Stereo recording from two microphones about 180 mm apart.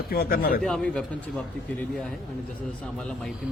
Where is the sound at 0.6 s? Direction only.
Centre (ahead or behind).